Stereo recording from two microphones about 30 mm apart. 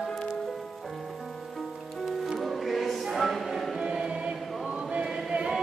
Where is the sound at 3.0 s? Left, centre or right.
Centre.